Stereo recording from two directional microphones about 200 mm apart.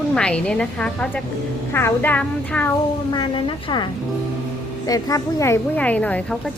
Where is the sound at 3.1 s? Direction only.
25° left (ahead or behind).